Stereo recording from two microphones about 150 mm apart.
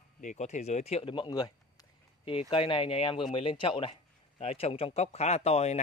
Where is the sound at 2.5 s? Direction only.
35° left (ahead or behind).